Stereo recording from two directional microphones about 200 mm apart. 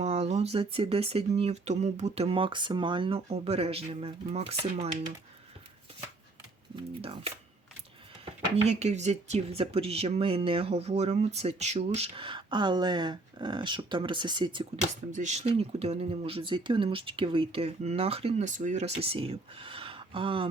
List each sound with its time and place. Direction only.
0.0 s speech: 30° right (ahead or behind)
6.7 s speech: 30° right (ahead or behind)
15.1 s speech: 35° right (ahead or behind)